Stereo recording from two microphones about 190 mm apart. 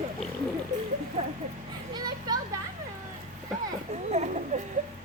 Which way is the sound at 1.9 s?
20° right (ahead or behind).